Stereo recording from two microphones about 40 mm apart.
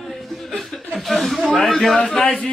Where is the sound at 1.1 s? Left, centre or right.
Centre.